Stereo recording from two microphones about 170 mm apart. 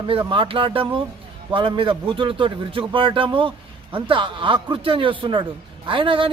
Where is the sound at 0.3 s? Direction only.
30° right (ahead or behind).